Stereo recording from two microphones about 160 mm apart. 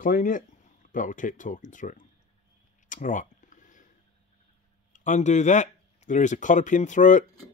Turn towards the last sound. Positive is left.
turn(degrees=50)  # may be behind; listen again after turning